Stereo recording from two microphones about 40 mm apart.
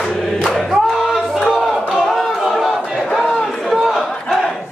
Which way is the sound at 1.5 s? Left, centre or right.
Centre.